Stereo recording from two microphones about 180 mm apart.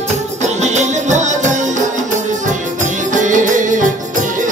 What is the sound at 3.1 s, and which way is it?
Music, 45° right (ahead or behind).